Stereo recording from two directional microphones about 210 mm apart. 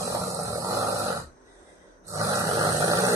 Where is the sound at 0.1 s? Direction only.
15° right (ahead or behind).